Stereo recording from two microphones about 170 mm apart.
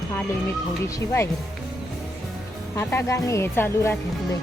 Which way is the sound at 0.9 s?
15° left (ahead or behind).